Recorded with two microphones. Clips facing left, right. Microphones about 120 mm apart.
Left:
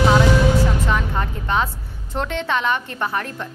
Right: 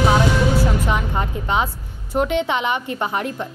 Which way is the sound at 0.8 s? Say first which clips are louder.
Even; 15° right (ahead or behind).